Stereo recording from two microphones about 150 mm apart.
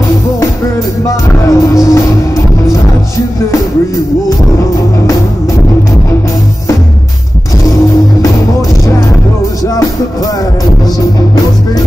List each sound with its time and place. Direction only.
1.0 s music: 20° left (ahead or behind)
8.2 s music: 20° left (ahead or behind)